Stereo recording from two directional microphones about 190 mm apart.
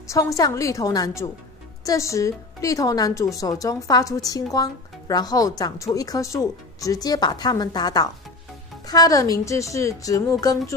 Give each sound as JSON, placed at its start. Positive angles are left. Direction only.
{"t": 0.1, "sound": "a woman's voice", "side_deg": 15}